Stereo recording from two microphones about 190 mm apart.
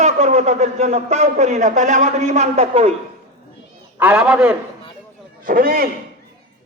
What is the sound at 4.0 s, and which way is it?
Speech, 5° right (ahead or behind).